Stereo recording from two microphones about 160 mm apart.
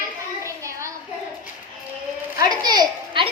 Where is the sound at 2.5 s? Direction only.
25° right (ahead or behind).